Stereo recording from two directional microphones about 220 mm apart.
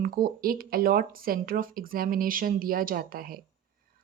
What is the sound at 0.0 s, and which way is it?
Speech, 40° right (ahead or behind).